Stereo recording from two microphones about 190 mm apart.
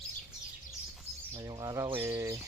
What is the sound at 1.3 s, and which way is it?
Speech, 20° right (ahead or behind).